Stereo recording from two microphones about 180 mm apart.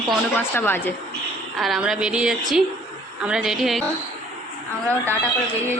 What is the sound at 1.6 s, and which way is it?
A woman's voice, centre (ahead or behind).